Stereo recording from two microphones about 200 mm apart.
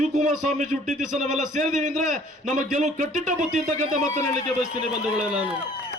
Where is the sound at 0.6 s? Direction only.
40° right (ahead or behind).